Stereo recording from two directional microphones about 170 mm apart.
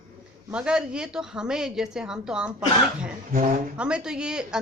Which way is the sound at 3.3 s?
50° right (ahead or behind).